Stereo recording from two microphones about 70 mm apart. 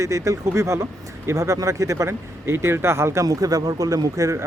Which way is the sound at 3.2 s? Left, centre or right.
Right.